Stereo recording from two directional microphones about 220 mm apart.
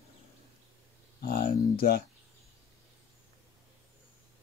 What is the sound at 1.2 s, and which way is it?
Speech, 40° left (ahead or behind).